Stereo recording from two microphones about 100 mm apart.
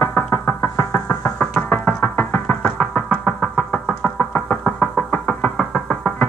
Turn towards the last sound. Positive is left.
turn(degrees=10)  # may be behind; listen again after turning